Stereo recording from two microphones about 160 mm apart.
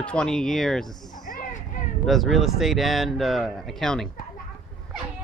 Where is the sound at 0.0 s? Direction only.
5° left (ahead or behind).